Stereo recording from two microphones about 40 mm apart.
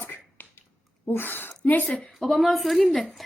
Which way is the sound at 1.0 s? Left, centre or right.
Left.